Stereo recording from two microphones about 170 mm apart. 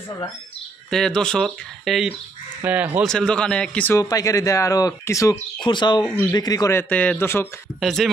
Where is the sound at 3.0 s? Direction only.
5° left (ahead or behind).